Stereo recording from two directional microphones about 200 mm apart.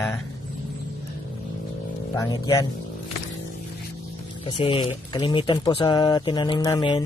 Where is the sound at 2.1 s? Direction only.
20° left (ahead or behind).